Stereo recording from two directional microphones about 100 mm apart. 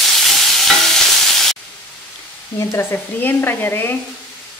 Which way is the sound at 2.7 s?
20° left (ahead or behind).